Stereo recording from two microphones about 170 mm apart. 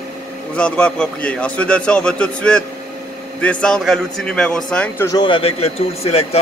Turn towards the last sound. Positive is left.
turn(degrees=35)  # may be behind; listen again after turning